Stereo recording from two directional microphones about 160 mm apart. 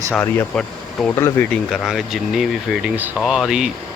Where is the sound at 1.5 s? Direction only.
Centre (ahead or behind).